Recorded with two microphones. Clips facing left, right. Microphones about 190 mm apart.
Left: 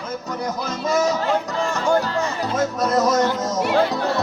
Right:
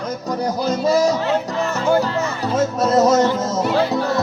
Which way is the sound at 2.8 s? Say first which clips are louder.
Right 5 dB; 25° right (ahead or behind).